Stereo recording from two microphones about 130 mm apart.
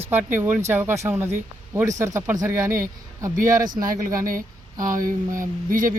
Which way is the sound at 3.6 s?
90° right.